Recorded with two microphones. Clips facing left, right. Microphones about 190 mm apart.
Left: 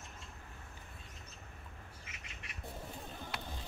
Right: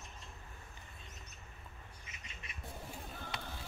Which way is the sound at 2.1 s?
70° left (ahead or behind).